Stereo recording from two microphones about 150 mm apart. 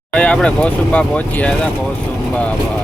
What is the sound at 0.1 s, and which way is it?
Speech, 5° left (ahead or behind).